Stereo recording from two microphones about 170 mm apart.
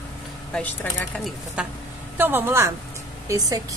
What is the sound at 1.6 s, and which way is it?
A woman's voice, 5° right (ahead or behind).